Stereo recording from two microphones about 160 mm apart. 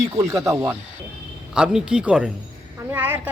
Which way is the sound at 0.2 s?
20° right (ahead or behind).